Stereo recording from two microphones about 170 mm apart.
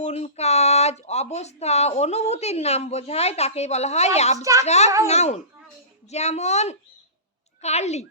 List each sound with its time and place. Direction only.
0.0 s speech: 40° left (ahead or behind)